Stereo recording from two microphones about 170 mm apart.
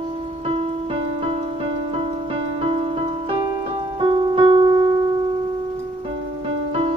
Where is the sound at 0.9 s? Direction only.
35° right (ahead or behind).